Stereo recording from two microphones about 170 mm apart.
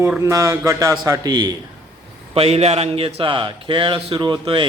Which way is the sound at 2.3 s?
35° right (ahead or behind).